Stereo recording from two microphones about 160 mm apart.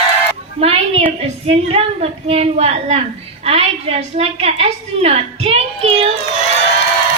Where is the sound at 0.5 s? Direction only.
40° right (ahead or behind).